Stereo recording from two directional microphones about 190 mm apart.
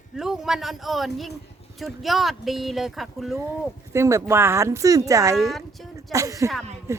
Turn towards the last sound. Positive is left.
turn(degrees=-15)  # may be behind; listen again after turning